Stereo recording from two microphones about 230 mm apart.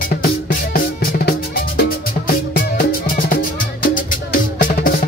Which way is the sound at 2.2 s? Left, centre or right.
Left.